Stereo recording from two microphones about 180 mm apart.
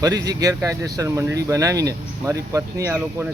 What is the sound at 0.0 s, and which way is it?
Speech, 20° right (ahead or behind).